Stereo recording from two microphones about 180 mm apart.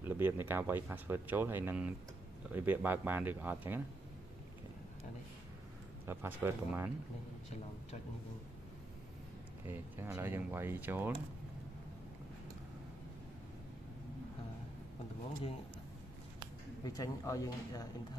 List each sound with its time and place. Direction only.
0.0 s speech: 10° right (ahead or behind)
6.0 s speech: 10° right (ahead or behind)
9.7 s speech: 10° right (ahead or behind)
16.8 s speech: 20° left (ahead or behind)